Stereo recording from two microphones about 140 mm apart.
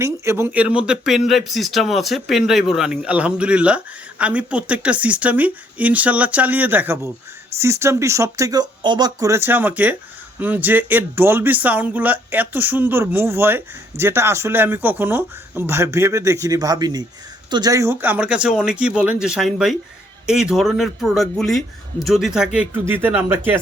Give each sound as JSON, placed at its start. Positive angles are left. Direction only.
{"t": 0.0, "sound": "speech", "side_deg": -20}
{"t": 9.3, "sound": "speech", "side_deg": -15}
{"t": 22.9, "sound": "speech", "side_deg": -15}